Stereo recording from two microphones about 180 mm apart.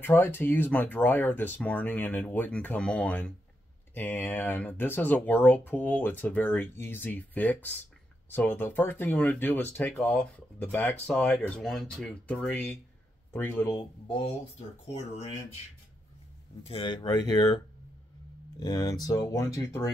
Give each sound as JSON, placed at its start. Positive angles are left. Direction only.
{"t": 0.0, "sound": "speech", "side_deg": 10}
{"t": 14.0, "sound": "speech", "side_deg": 25}
{"t": 14.9, "sound": "speech", "side_deg": 35}
{"t": 16.6, "sound": "speech", "side_deg": 30}
{"t": 18.6, "sound": "speech", "side_deg": 20}